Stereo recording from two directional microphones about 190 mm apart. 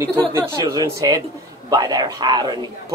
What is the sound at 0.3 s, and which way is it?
A man's voice, 15° right (ahead or behind).